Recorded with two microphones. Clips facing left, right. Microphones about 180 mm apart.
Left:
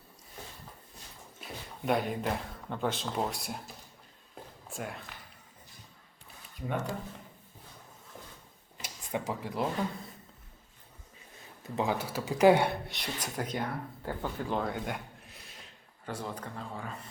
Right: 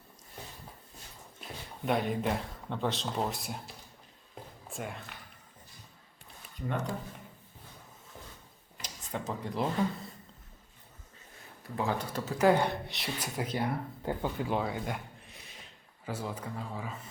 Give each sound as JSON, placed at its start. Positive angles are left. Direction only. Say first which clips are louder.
{"t": 1.4, "sound": "speech", "louder": "even", "side_deg": 0}
{"t": 4.7, "sound": "speech", "louder": "even", "side_deg": 0}
{"t": 6.7, "sound": "speech", "louder": "even", "side_deg": 5}
{"t": 8.8, "sound": "speech", "louder": "left 3 dB", "side_deg": 10}
{"t": 11.6, "sound": "speech", "louder": "left 2 dB", "side_deg": 20}
{"t": 11.9, "sound": "speech", "louder": "left 2 dB", "side_deg": 5}
{"t": 12.9, "sound": "speech", "louder": "right 1 dB", "side_deg": 0}
{"t": 13.7, "sound": "speech", "louder": "right 3 dB", "side_deg": -20}